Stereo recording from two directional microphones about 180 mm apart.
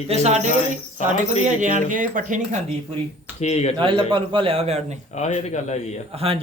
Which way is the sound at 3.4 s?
35° left (ahead or behind).